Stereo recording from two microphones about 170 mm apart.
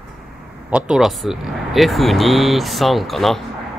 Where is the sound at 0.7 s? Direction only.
5° right (ahead or behind).